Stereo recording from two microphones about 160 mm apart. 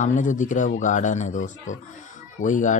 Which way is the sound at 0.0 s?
50° left (ahead or behind).